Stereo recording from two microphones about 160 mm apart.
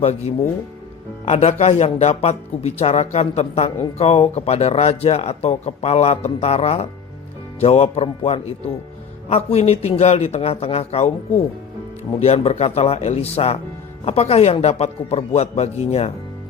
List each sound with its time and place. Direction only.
0.0 s speech: 40° left (ahead or behind)